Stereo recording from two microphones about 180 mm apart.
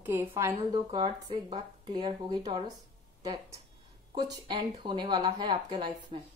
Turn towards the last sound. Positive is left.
turn(degrees=-25)  # may be behind; listen again after turning